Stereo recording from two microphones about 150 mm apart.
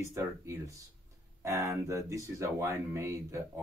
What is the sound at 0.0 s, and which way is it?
Speech, 20° right (ahead or behind).